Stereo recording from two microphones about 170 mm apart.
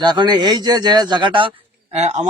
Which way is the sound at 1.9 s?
40° right (ahead or behind).